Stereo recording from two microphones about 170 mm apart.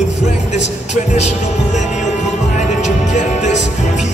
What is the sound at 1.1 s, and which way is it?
Music, 40° left (ahead or behind).